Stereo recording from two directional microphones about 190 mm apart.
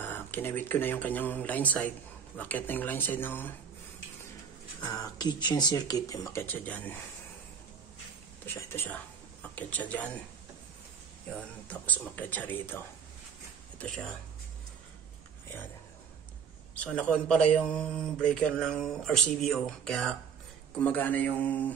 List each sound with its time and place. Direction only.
0.0 s speech: 10° left (ahead or behind)
4.8 s speech: 20° left (ahead or behind)
8.5 s speech: 15° left (ahead or behind)
11.3 s speech: 5° left (ahead or behind)
16.7 s speech: 5° left (ahead or behind)